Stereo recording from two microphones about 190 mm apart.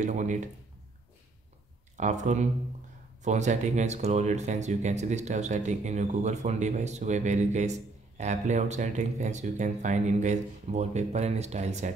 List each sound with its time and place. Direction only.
0.0 s speech: 40° right (ahead or behind)
2.0 s speech: 40° right (ahead or behind)